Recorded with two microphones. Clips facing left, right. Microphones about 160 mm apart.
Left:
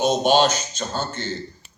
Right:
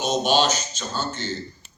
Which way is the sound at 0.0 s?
55° left (ahead or behind).